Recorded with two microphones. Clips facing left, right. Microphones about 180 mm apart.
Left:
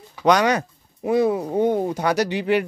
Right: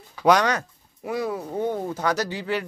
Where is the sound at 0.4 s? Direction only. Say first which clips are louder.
Left 4 dB; 15° left (ahead or behind).